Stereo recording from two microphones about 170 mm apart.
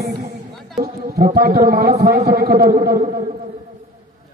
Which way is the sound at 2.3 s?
60° right (ahead or behind).